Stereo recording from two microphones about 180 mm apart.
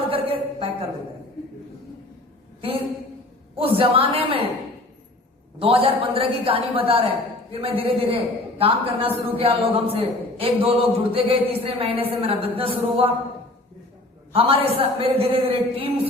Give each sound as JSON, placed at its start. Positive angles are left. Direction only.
{"t": 0.0, "sound": "a sound", "side_deg": -30}
{"t": 3.5, "sound": "a man's voice", "side_deg": -30}
{"t": 5.5, "sound": "a man's voice", "side_deg": -30}
{"t": 14.3, "sound": "a man's voice", "side_deg": -30}